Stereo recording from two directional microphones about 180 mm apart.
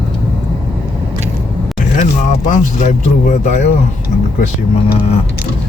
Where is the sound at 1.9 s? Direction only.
45° left (ahead or behind).